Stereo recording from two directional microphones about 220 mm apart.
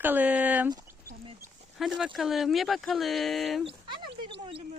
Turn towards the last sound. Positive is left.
turn(degrees=-20)  # may be behind; listen again after turning